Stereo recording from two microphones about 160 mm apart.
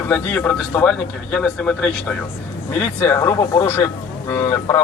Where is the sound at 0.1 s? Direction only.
10° left (ahead or behind).